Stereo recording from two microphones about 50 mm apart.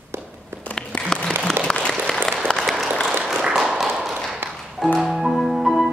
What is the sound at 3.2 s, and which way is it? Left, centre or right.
Tap, centre.